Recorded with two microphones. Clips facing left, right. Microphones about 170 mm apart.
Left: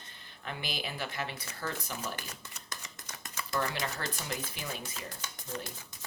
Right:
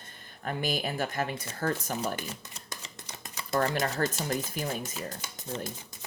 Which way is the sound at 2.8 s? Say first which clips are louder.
Right 2 dB; 25° right (ahead or behind).